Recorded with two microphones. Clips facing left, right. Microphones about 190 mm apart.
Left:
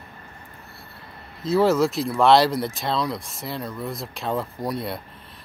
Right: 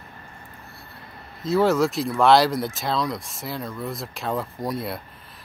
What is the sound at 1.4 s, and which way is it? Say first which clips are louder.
Speech: left 1 dB; centre (ahead or behind).